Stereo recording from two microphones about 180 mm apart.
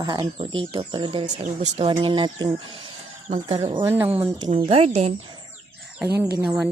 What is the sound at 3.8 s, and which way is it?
Speech, 10° right (ahead or behind).